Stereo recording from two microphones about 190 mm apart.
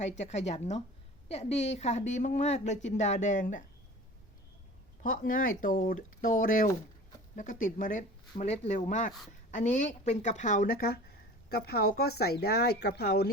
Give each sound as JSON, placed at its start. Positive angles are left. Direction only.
{"t": 0.0, "sound": "speech", "side_deg": 35}
{"t": 5.0, "sound": "speech", "side_deg": 45}